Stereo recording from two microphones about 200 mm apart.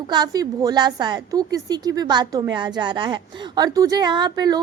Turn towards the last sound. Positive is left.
turn(degrees=-20)  # may be behind; listen again after turning